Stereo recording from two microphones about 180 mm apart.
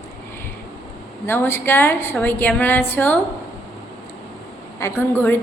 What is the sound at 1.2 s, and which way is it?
A woman's voice, 10° left (ahead or behind).